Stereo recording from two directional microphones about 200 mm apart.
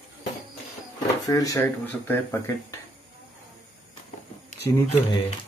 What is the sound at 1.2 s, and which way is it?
Speech, 15° left (ahead or behind).